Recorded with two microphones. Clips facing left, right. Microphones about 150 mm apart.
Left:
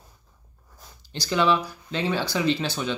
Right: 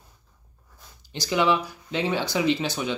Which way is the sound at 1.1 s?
15° right (ahead or behind).